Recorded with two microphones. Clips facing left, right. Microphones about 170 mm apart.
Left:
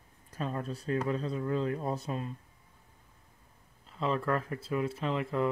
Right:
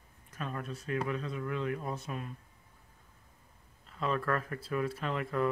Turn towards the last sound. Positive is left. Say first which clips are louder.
# left 2 dB
turn(degrees=25)  # may be behind; listen again after turning